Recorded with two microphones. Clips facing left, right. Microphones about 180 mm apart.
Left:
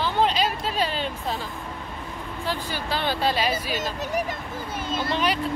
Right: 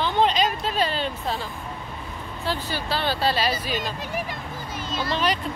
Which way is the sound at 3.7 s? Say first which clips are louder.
Left 1 dB; 45° left (ahead or behind).